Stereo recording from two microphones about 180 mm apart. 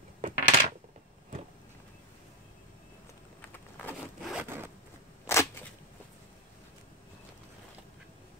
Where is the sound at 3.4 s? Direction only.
10° left (ahead or behind).